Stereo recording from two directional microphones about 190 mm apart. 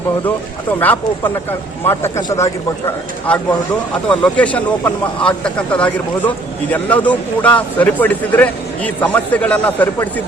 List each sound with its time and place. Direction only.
0.8 s speech: 10° left (ahead or behind)
4.1 s speech: 5° left (ahead or behind)